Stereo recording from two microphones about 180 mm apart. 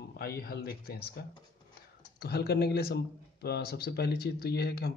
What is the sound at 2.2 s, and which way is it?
Speech, 60° left (ahead or behind).